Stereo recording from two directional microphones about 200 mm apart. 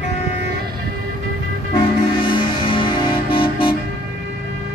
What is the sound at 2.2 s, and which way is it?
Music, 25° left (ahead or behind).